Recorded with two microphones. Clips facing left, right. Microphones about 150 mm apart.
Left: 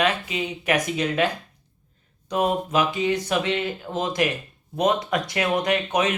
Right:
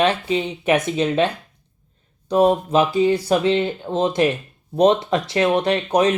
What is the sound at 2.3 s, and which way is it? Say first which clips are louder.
Speech: right 6 dB; 35° right (ahead or behind).